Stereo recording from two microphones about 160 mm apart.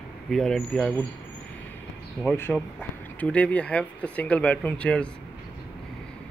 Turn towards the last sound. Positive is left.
turn(degrees=5)  # may be behind; listen again after turning